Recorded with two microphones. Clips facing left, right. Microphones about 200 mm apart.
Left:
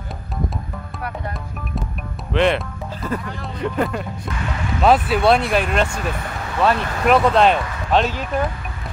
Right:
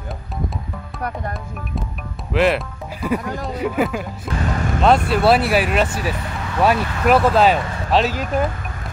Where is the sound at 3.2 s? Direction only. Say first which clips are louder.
Right 5 dB; 40° right (ahead or behind).